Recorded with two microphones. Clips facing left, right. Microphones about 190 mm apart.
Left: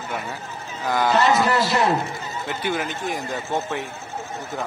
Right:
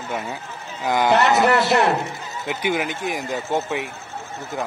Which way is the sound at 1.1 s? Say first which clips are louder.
Right 2 dB; 65° right (ahead or behind).